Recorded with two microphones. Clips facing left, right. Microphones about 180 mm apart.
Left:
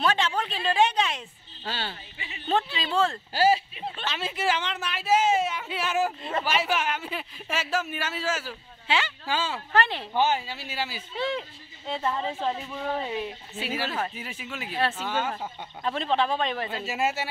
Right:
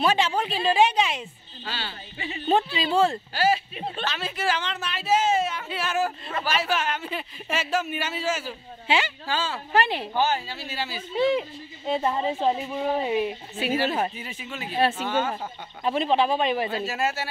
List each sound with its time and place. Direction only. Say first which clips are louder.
0.0 s speech: right 3 dB; 10° right (ahead or behind)
1.6 s speech: left 1 dB; 50° left (ahead or behind)
2.1 s speech: right 9 dB; 35° right (ahead or behind)
2.4 s speech: right 4 dB; 10° right (ahead or behind)
4.0 s speech: even; 25° left (ahead or behind); by 8.5 s centre (ahead or behind)
8.8 s speech: right 3 dB; 15° right (ahead or behind)
9.3 s speech: even; 15° left (ahead or behind)
9.7 s speech: right 3 dB; 10° right (ahead or behind)
10.1 s speech: left 2 dB; 20° left (ahead or behind)
11.1 s speech: right 7 dB; 15° right (ahead or behind)
14.1 s speech: right 1 dB; 5° left (ahead or behind)
14.8 s speech: right 4 dB; 10° right (ahead or behind)
16.8 s speech: right 1 dB; 20° left (ahead or behind)